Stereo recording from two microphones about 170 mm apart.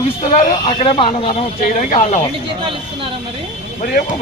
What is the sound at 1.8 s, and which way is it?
Speech, 50° left (ahead or behind).